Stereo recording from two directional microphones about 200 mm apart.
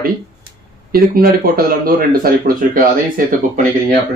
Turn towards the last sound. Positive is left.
turn(degrees=-45)  # may be behind; listen again after turning